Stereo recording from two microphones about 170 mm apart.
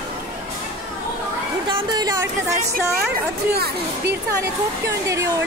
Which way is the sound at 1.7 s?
25° right (ahead or behind).